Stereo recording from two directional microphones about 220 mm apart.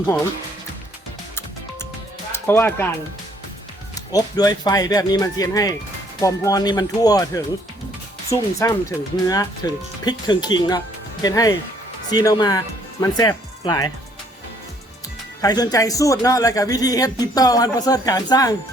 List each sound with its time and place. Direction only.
2.3 s speech: 10° left (ahead or behind)
4.1 s speech: 15° left (ahead or behind)
15.4 s speech: 20° left (ahead or behind)